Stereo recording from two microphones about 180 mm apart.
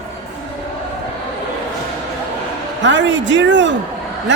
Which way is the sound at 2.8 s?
85° right.